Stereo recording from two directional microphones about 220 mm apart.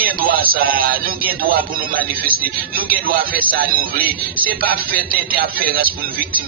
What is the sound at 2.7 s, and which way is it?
Speech, 40° right (ahead or behind).